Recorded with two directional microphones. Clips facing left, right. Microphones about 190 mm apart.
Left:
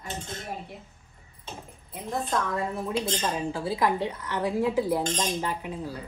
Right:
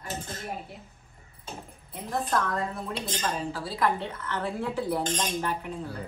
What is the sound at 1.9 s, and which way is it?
Speech, centre (ahead or behind).